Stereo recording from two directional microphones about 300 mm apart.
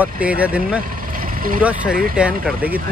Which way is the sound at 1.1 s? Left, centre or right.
Right.